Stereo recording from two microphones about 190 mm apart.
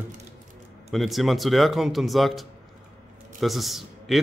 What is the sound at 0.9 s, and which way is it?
A man's voice, centre (ahead or behind).